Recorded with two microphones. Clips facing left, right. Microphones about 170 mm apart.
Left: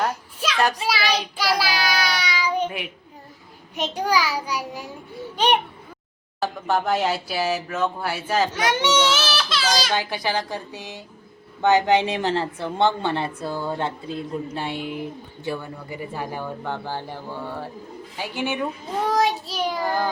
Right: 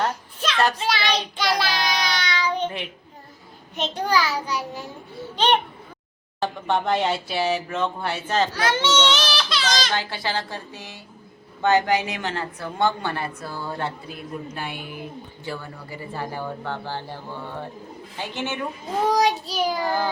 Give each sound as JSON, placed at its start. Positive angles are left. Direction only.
{"t": 0.0, "sound": "a sound", "side_deg": 10}
{"t": 0.8, "sound": "child singing", "side_deg": 5}
{"t": 3.8, "sound": "speech", "side_deg": 10}
{"t": 6.4, "sound": "a woman's voice", "side_deg": 5}
{"t": 19.1, "sound": "child singing", "side_deg": 0}